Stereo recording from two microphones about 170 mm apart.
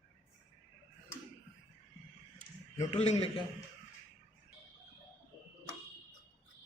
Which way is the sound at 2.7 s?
40° left (ahead or behind).